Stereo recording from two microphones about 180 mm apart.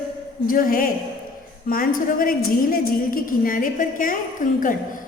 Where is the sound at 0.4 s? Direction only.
50° left (ahead or behind).